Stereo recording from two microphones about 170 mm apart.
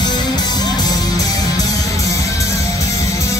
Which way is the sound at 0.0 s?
25° left (ahead or behind).